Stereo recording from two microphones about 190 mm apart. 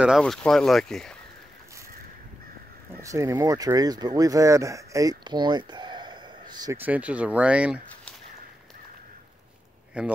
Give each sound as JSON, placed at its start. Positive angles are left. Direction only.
{"t": 0.0, "sound": "speech", "side_deg": 0}
{"t": 3.0, "sound": "speech", "side_deg": -15}
{"t": 6.8, "sound": "speech", "side_deg": -5}
{"t": 9.9, "sound": "speech", "side_deg": -5}